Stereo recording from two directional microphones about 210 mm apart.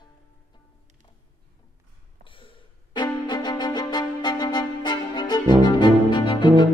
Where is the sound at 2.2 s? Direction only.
25° left (ahead or behind).